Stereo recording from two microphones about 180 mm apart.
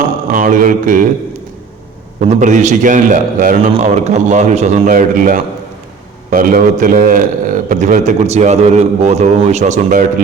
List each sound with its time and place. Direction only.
0.3 s a man's voice: 45° right (ahead or behind)
2.3 s a man's voice: 40° right (ahead or behind)